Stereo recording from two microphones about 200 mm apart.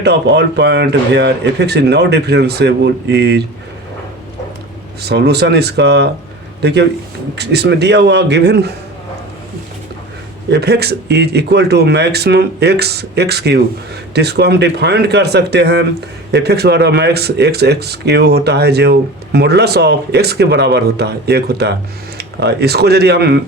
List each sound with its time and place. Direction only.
0.0 s speech: 55° right (ahead or behind)
5.0 s speech: 55° right (ahead or behind)
10.5 s speech: 55° right (ahead or behind)